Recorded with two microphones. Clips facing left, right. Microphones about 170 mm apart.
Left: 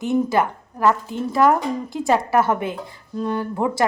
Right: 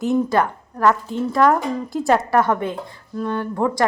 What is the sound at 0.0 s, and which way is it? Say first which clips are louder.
A woman's voice: right 1 dB; centre (ahead or behind).